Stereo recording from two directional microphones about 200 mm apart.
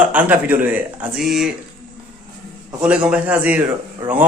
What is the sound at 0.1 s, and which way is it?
Speech, 10° right (ahead or behind).